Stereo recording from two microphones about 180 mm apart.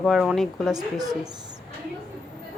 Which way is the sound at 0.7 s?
20° right (ahead or behind).